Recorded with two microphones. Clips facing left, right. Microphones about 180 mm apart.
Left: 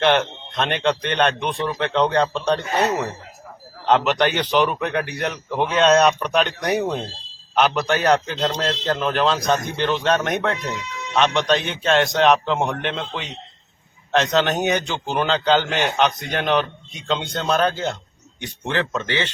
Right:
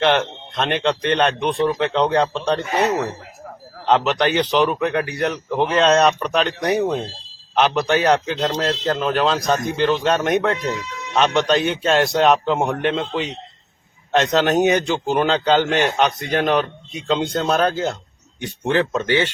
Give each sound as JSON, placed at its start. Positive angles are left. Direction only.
{"t": 0.0, "sound": "a man's voice", "side_deg": 0}
{"t": 3.8, "sound": "a man's voice", "side_deg": 0}